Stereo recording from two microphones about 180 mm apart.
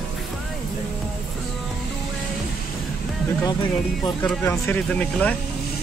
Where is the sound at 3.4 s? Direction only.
20° left (ahead or behind).